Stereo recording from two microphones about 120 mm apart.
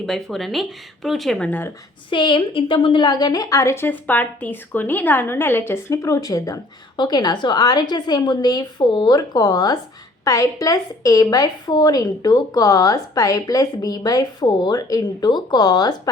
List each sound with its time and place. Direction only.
0.0 s speech: centre (ahead or behind)
1.5 s speech: 15° left (ahead or behind)
2.0 s a woman's voice: 40° left (ahead or behind)